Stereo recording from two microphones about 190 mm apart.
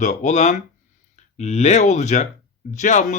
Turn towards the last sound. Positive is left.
turn(degrees=40)  # may be behind; listen again after turning